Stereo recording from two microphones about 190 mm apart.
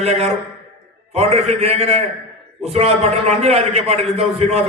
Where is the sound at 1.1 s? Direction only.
35° right (ahead or behind).